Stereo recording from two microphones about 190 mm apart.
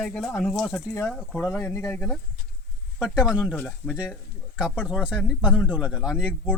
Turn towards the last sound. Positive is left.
turn(degrees=-5)  # may be behind; listen again after turning